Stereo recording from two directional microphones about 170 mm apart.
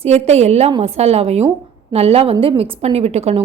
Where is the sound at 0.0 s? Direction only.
40° right (ahead or behind).